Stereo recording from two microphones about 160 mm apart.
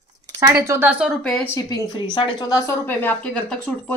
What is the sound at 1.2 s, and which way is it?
Speech, 5° left (ahead or behind).